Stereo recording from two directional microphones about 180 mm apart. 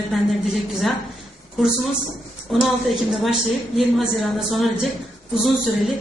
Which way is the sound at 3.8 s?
Centre (ahead or behind).